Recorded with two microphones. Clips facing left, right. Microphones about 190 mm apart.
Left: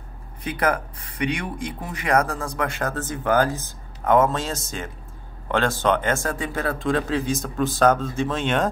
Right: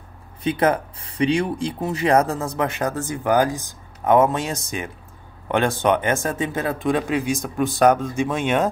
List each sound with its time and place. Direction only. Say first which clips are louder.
0.4 s speech: right 4 dB; 25° right (ahead or behind)